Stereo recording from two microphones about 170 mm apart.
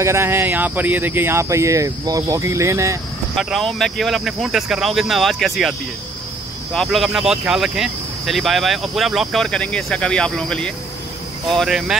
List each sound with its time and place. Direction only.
0.0 s speech: 15° right (ahead or behind)
3.3 s speech: centre (ahead or behind)